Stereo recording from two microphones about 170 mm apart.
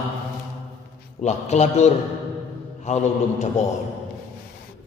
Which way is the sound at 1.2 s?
40° left (ahead or behind).